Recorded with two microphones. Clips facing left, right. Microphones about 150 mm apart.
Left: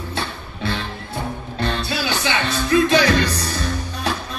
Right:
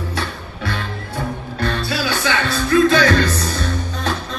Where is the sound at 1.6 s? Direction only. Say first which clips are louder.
Right 2 dB; 20° left (ahead or behind).